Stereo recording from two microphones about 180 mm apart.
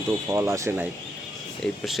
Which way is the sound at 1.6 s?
Centre (ahead or behind).